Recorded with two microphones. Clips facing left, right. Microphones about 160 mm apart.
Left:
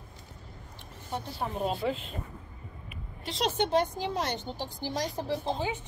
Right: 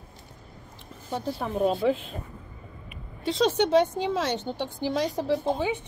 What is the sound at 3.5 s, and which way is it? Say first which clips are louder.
Speech: right 3 dB; 80° right.